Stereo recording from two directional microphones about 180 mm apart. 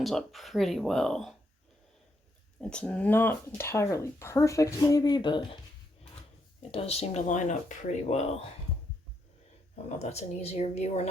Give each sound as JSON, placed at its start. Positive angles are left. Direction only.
{"t": 0.0, "sound": "speech", "side_deg": 0}
{"t": 2.6, "sound": "speech", "side_deg": 5}
{"t": 6.6, "sound": "speech", "side_deg": 35}
{"t": 10.0, "sound": "speech", "side_deg": 35}